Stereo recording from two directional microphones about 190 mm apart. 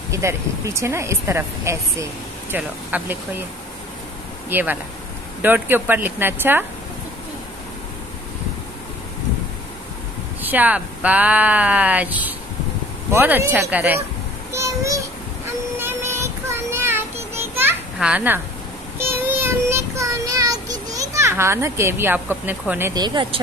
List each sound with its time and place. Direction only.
0.1 s speech: 15° right (ahead or behind)
4.5 s speech: 10° right (ahead or behind)
10.4 s a child's voice: 10° right (ahead or behind)
15.8 s child singing: 10° right (ahead or behind)
17.6 s children playing: 10° right (ahead or behind)
18.9 s child singing: 10° right (ahead or behind)